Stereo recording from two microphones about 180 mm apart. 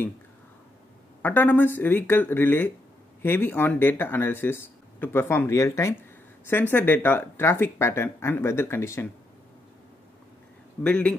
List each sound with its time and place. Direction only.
1.2 s speech: 10° left (ahead or behind)
10.8 s speech: 10° left (ahead or behind)